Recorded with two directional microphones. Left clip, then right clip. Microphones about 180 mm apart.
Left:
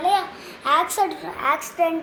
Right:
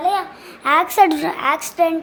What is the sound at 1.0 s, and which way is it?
Speech, 65° right (ahead or behind).